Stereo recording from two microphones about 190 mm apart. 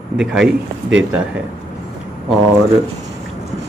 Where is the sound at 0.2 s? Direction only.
5° right (ahead or behind).